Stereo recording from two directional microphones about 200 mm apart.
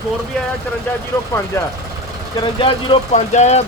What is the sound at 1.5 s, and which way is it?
Speech, 15° left (ahead or behind).